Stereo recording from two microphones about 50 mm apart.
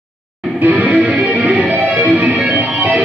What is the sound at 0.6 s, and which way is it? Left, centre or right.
Music, right.